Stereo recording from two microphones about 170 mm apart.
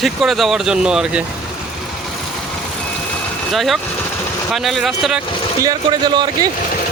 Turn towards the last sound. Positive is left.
turn(degrees=-25)  # may be behind; listen again after turning